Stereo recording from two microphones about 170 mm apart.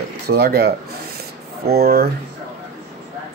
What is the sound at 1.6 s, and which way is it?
Speech, 70° right (ahead or behind).